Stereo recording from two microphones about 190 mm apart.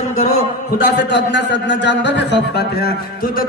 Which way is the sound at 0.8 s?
65° left (ahead or behind).